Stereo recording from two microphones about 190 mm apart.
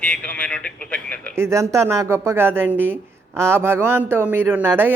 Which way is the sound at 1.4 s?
15° right (ahead or behind).